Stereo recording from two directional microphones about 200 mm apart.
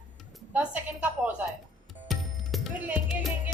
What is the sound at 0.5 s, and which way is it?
A woman's voice, 10° right (ahead or behind).